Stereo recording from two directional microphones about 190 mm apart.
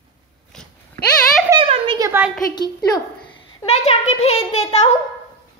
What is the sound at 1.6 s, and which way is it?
Speech, 30° right (ahead or behind).